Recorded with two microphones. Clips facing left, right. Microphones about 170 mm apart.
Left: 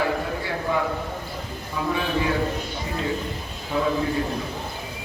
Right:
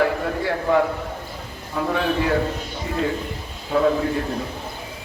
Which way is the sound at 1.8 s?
55° right (ahead or behind).